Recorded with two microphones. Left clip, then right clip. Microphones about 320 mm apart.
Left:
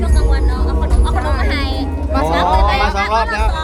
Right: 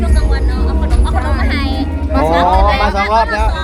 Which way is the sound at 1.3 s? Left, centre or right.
Centre.